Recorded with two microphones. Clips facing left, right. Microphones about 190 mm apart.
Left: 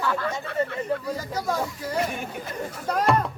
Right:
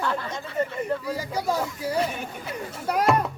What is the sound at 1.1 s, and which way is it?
Speech, 10° right (ahead or behind).